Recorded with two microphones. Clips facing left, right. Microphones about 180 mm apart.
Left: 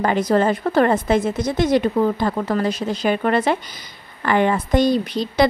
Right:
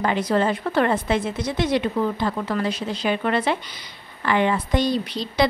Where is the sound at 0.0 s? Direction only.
45° left (ahead or behind).